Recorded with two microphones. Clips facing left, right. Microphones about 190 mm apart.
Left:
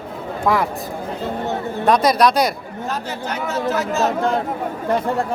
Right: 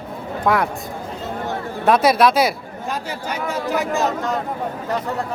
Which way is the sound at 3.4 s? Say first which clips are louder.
Left 1 dB; 15° right (ahead or behind).